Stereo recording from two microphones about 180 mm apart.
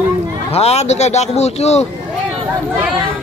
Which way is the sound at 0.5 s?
35° left (ahead or behind).